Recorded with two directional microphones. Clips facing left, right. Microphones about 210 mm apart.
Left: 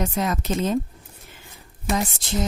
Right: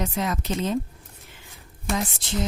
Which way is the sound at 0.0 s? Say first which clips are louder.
Left 2 dB; 45° left (ahead or behind).